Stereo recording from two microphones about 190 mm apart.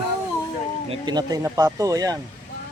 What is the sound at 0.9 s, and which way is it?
Speech, 20° right (ahead or behind).